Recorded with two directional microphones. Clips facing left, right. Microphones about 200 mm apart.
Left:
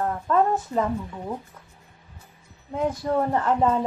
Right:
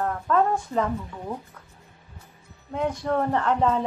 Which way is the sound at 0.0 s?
10° left (ahead or behind).